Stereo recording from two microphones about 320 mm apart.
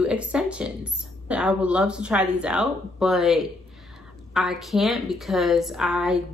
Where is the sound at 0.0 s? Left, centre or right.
Centre.